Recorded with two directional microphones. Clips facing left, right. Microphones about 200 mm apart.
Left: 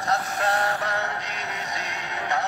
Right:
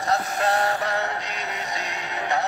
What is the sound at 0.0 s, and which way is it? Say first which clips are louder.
Synthetic singing: right 2 dB; 10° right (ahead or behind).